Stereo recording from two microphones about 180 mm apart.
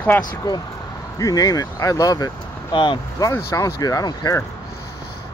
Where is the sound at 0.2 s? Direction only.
20° left (ahead or behind).